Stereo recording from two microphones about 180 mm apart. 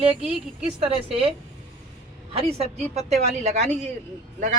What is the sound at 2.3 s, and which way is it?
A woman's voice, 35° right (ahead or behind).